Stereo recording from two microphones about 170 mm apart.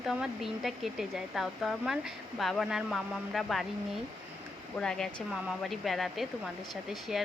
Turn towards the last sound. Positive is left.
turn(degrees=0)  # may be behind; listen again after turning